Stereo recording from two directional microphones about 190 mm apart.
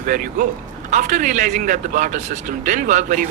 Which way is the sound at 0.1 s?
45° right (ahead or behind).